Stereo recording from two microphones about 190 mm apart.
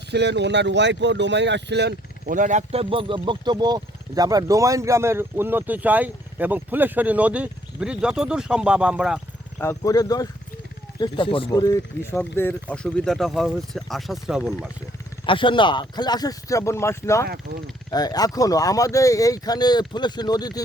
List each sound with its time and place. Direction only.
0.1 s speech: 65° right (ahead or behind)
2.3 s speech: 40° right (ahead or behind); by 9.2 s 5° right (ahead or behind)
9.6 s speech: 15° left (ahead or behind); by 14.7 s 5° right (ahead or behind)
15.3 s speech: 25° left (ahead or behind)
17.2 s speech: 55° right (ahead or behind)
17.9 s speech: 20° left (ahead or behind)